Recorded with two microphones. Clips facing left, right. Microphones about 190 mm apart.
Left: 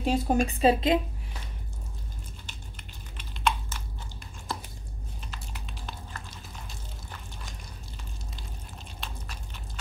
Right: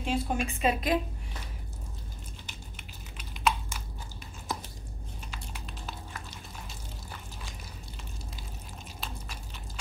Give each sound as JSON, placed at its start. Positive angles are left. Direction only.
{"t": 0.0, "sound": "a woman's voice", "side_deg": 40}
{"t": 3.2, "sound": "typing", "side_deg": -10}
{"t": 5.5, "sound": "a sound", "side_deg": 0}
{"t": 9.0, "sound": "biting", "side_deg": 0}